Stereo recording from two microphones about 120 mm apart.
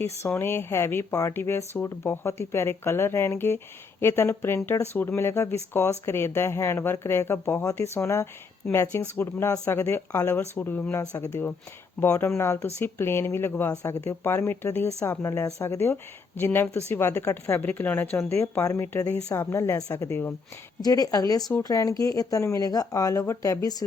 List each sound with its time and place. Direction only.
0.2 s speech: 20° left (ahead or behind)
11.0 s speech: 25° left (ahead or behind)
20.8 s a woman's voice: 30° left (ahead or behind)